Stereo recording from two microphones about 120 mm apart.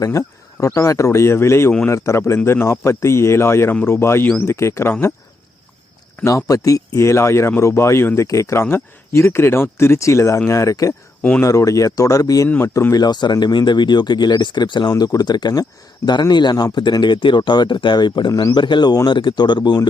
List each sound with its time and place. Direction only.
0.0 s speech: 25° left (ahead or behind)
6.2 s speech: 30° left (ahead or behind)
11.2 s speech: 15° left (ahead or behind)
11.4 s speech: 25° left (ahead or behind)